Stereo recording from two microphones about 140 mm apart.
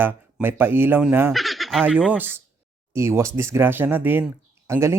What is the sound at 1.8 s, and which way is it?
Speech, 10° right (ahead or behind).